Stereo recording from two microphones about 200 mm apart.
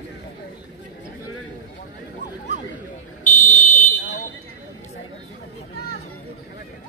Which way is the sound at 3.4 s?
40° left (ahead or behind).